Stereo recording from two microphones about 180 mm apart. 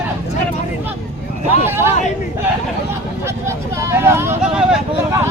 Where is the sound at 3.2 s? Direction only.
15° right (ahead or behind).